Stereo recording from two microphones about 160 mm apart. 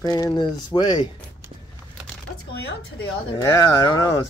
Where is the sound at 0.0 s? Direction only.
25° left (ahead or behind).